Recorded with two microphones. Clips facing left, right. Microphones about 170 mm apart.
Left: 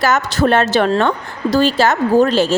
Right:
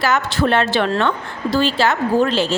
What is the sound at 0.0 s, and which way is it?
A woman's voice, 45° left (ahead or behind).